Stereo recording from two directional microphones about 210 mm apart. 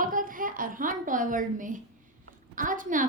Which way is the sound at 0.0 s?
40° right (ahead or behind).